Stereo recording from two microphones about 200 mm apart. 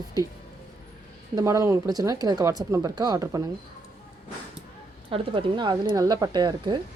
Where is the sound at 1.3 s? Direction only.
15° right (ahead or behind).